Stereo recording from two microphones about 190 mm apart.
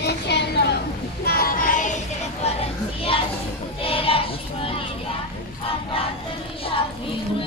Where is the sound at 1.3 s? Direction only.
50° left (ahead or behind); by 3.2 s 30° left (ahead or behind).